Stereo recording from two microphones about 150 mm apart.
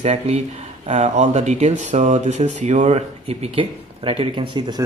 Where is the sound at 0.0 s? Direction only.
45° right (ahead or behind).